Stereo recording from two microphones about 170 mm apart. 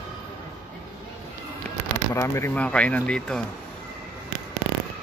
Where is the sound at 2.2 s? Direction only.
15° left (ahead or behind).